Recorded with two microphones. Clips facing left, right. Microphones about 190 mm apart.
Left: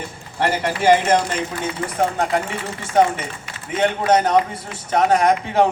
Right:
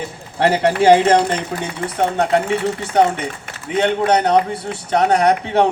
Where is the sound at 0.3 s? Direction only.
60° right (ahead or behind).